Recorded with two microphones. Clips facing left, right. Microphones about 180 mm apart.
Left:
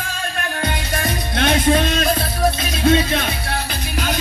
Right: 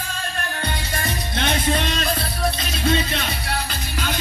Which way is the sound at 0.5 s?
50° left (ahead or behind).